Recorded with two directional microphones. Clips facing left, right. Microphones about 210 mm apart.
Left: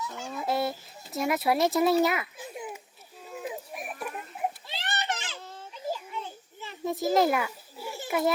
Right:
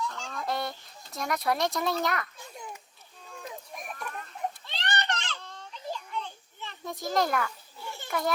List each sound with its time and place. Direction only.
0.0 s fowl: 10° left (ahead or behind)
3.2 s children playing: 5° left (ahead or behind)